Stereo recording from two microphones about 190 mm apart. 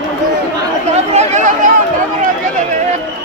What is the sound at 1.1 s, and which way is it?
Chatter, 40° right (ahead or behind).